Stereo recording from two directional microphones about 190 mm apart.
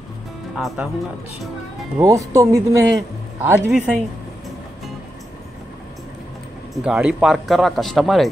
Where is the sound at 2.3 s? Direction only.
15° right (ahead or behind).